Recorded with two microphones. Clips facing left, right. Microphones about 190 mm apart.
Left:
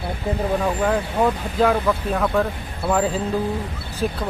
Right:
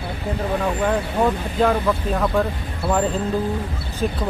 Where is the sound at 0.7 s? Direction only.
Centre (ahead or behind).